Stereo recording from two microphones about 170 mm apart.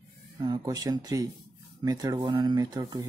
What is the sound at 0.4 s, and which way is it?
Speech, 20° right (ahead or behind).